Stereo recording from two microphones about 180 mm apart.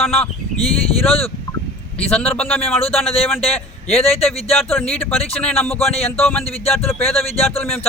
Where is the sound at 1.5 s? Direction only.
15° left (ahead or behind).